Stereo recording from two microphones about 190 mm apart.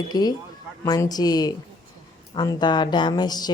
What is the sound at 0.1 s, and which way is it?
A woman's voice, 20° left (ahead or behind).